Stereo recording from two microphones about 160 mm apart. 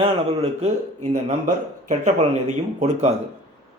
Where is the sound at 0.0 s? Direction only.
40° right (ahead or behind).